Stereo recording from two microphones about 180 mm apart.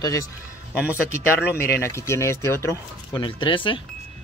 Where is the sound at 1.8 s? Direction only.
15° left (ahead or behind).